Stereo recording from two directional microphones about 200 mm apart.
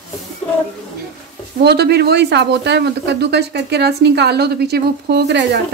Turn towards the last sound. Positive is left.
turn(degrees=-55)  # may be behind; listen again after turning